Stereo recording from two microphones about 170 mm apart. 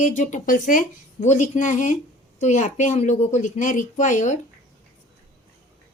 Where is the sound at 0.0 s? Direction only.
45° left (ahead or behind).